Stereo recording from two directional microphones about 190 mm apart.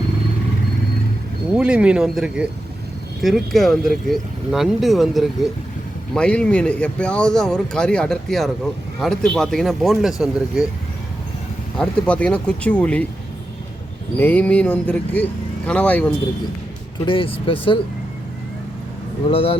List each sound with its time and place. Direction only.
1.5 s speech: 5° right (ahead or behind)
11.8 s speech: 5° left (ahead or behind)
14.2 s speech: 10° left (ahead or behind)
17.1 s speech: 30° left (ahead or behind)
19.3 s speech: 30° left (ahead or behind)